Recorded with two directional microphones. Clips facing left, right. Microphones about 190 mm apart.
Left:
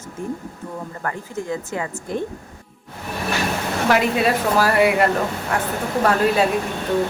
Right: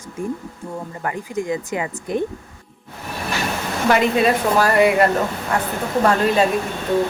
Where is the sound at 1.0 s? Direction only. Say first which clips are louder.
Right 4 dB; 15° right (ahead or behind).